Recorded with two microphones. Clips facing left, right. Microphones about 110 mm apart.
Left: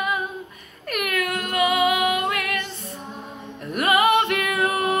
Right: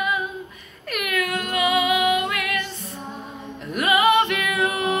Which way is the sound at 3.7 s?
45° left (ahead or behind).